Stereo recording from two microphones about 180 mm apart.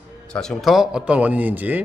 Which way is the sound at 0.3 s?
5° left (ahead or behind).